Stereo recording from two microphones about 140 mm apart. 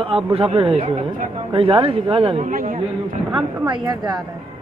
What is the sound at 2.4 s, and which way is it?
Speech, 70° right (ahead or behind).